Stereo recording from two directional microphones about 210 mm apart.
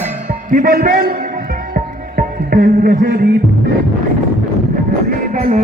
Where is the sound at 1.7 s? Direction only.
45° right (ahead or behind).